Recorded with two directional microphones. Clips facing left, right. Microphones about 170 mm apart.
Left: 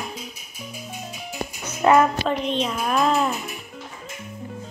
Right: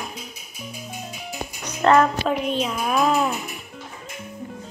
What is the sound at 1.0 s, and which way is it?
Music, centre (ahead or behind).